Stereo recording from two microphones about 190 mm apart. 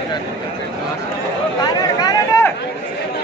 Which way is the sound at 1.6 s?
20° left (ahead or behind).